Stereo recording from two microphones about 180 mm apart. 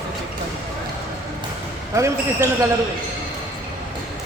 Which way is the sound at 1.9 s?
15° right (ahead or behind).